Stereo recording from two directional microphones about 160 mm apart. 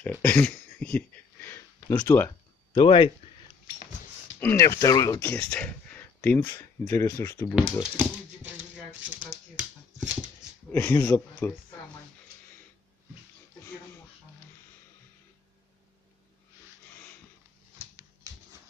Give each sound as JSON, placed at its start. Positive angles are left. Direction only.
{"t": 0.0, "sound": "a sound", "side_deg": 10}
{"t": 2.7, "sound": "speech", "side_deg": 30}
{"t": 4.4, "sound": "speech", "side_deg": 15}
{"t": 5.2, "sound": "speech", "side_deg": 10}
{"t": 7.8, "sound": "a sound", "side_deg": -10}
{"t": 10.7, "sound": "speech", "side_deg": 15}